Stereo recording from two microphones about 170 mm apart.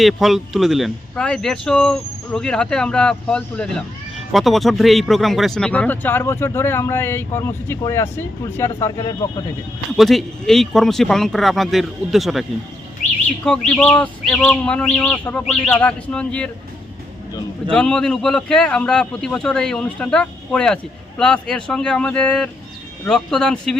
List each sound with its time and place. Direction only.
0.0 s speech: centre (ahead or behind); by 9.1 s 15° left (ahead or behind)
10.0 s speech: centre (ahead or behind)
17.7 s speech: 5° left (ahead or behind)